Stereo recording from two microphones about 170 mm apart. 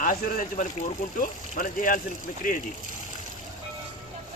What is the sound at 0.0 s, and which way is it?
Speech, 50° left (ahead or behind).